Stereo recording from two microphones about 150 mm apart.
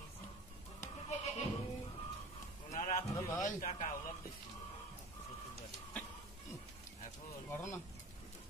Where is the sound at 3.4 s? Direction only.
60° left (ahead or behind).